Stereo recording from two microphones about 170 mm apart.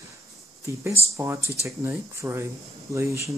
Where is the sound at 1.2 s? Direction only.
15° right (ahead or behind).